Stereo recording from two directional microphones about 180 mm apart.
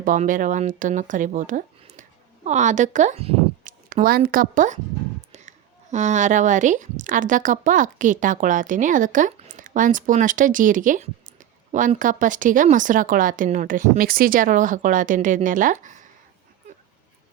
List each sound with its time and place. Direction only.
0.0 s a woman's voice: 45° right (ahead or behind)